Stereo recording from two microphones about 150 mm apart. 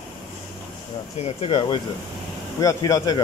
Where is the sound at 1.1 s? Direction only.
45° left (ahead or behind); by 3.2 s 25° left (ahead or behind).